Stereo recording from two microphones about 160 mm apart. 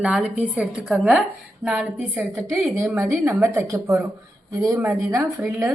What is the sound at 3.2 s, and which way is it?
A woman's voice, 15° right (ahead or behind).